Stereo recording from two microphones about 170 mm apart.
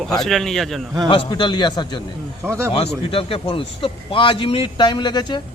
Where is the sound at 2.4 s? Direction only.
15° right (ahead or behind).